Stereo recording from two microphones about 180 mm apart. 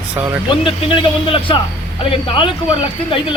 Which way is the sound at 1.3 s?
30° left (ahead or behind).